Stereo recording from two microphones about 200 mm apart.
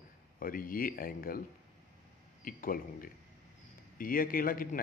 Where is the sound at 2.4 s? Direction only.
45° left (ahead or behind).